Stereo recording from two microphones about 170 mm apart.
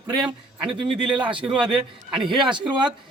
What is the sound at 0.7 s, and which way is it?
Speech, 30° right (ahead or behind).